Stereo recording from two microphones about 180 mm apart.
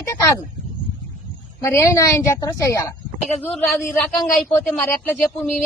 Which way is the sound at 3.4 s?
Centre (ahead or behind).